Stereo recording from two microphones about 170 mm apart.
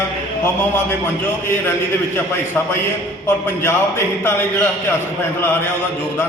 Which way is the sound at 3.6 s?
15° left (ahead or behind).